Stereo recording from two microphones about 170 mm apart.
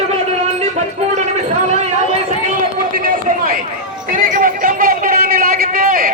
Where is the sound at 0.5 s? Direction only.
40° right (ahead or behind).